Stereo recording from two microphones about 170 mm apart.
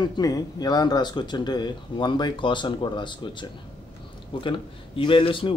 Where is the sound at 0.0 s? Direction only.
25° left (ahead or behind).